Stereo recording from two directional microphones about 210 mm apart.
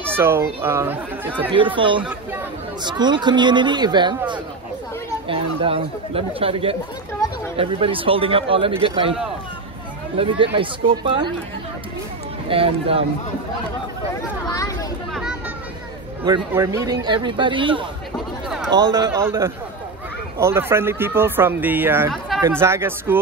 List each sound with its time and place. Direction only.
0.0 s speech: 10° right (ahead or behind)
1.5 s speech: 25° right (ahead or behind)
10.1 s speech: 25° right (ahead or behind)
12.4 s speech: 25° right (ahead or behind)
14.5 s a sound: 15° left (ahead or behind)
16.3 s speech: 15° right (ahead or behind)